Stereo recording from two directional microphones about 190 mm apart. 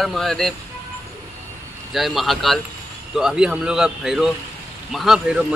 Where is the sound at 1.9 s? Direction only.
Centre (ahead or behind).